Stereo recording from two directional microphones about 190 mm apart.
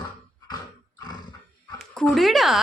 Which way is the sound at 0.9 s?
20° left (ahead or behind).